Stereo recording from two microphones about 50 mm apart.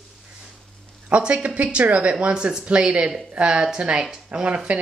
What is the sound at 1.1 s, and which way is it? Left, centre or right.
Speech, right.